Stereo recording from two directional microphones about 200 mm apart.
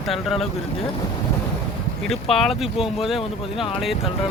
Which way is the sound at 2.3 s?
Centre (ahead or behind).